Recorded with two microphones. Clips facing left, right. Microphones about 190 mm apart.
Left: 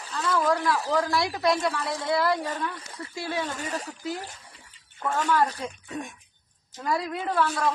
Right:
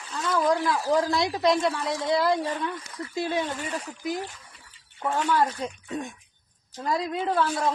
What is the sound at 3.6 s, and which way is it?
Speech, 40° left (ahead or behind).